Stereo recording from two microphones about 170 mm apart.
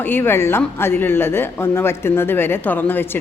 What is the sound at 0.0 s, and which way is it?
Speech, 15° left (ahead or behind).